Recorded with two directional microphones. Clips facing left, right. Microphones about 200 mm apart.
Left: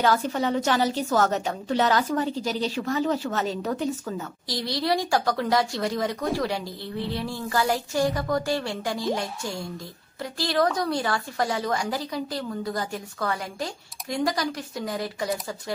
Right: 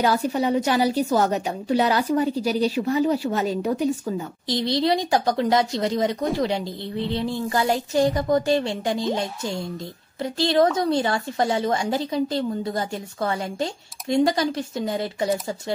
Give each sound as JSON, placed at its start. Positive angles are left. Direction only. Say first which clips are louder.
{"t": 0.0, "sound": "a woman's voice", "louder": "right 2 dB", "side_deg": -15}
{"t": 4.5, "sound": "a woman's voice", "louder": "right 5 dB", "side_deg": -20}